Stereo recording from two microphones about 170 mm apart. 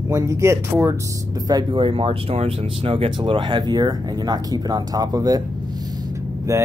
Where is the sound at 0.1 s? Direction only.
15° right (ahead or behind).